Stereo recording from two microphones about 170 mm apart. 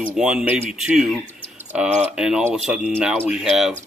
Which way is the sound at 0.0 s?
5° right (ahead or behind).